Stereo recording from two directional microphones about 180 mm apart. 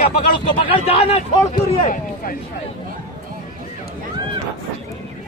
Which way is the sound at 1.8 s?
45° left (ahead or behind).